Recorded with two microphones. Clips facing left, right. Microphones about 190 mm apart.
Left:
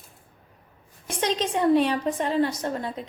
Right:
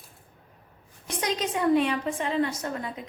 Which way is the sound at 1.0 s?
30° left (ahead or behind).